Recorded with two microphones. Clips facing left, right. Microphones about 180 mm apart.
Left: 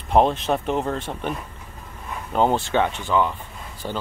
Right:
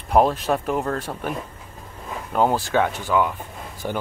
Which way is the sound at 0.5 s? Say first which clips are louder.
Even; 5° right (ahead or behind).